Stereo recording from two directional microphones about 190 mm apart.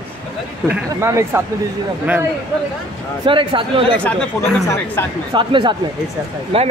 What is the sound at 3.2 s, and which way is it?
Speech, 25° right (ahead or behind).